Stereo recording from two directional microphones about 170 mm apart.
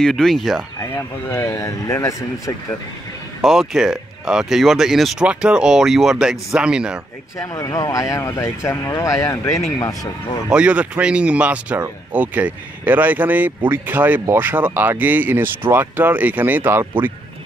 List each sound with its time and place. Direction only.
0.0 s speech: 5° left (ahead or behind)
0.7 s speech: 15° left (ahead or behind)
3.4 s speech: centre (ahead or behind)
7.3 s speech: 20° left (ahead or behind)
10.5 s speech: 5° right (ahead or behind)